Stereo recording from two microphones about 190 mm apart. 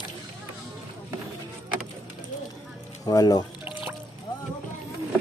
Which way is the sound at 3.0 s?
20° left (ahead or behind).